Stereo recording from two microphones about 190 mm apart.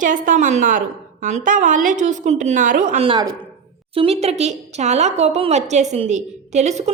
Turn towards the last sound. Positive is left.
turn(degrees=-35)  # may be behind; listen again after turning